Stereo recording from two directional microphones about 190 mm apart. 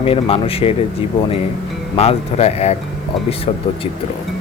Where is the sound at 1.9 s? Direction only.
30° left (ahead or behind).